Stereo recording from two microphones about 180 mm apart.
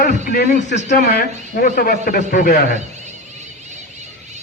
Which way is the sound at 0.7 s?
40° left (ahead or behind).